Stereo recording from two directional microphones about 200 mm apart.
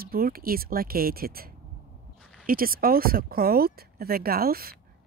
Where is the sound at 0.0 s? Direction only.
50° right (ahead or behind).